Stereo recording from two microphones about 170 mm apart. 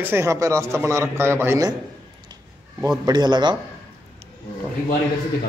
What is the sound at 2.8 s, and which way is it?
Speech, 25° right (ahead or behind).